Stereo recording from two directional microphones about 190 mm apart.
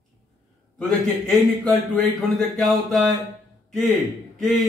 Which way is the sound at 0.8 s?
5° left (ahead or behind).